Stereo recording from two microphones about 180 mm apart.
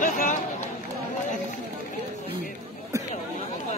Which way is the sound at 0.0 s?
50° left (ahead or behind).